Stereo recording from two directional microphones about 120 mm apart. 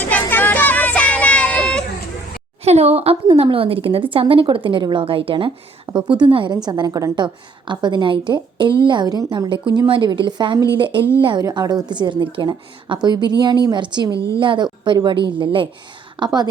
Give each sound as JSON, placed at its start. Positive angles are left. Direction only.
{"t": 0.0, "sound": "child singing", "side_deg": 15}
{"t": 2.6, "sound": "a woman's voice", "side_deg": -60}
{"t": 6.7, "sound": "a woman's voice", "side_deg": -30}
{"t": 11.4, "sound": "a woman's voice", "side_deg": -35}